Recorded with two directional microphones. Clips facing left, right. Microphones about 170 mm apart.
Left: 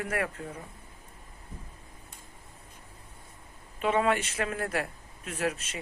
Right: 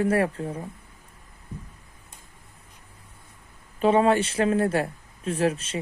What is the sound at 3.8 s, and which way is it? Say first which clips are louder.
A man's voice: right 7 dB; 30° right (ahead or behind).